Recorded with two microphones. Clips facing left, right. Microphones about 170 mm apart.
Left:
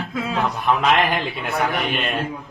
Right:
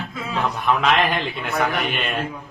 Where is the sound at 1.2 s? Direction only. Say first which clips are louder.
Even; centre (ahead or behind).